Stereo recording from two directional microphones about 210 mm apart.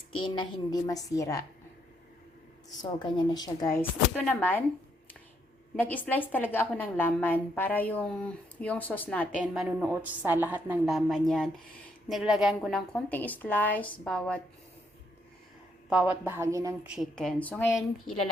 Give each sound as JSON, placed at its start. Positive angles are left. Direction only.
{"t": 0.2, "sound": "a woman's voice", "side_deg": 25}
{"t": 3.0, "sound": "a woman's voice", "side_deg": 20}
{"t": 5.7, "sound": "a woman's voice", "side_deg": 10}
{"t": 9.6, "sound": "a woman's voice", "side_deg": -5}
{"t": 15.9, "sound": "a woman's voice", "side_deg": -5}
{"t": 16.9, "sound": "a woman's voice", "side_deg": 0}